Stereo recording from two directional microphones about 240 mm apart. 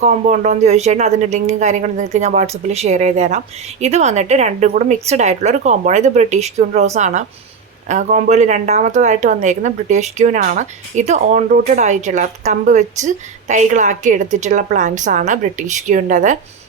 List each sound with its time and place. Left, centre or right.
0.0 s speech: right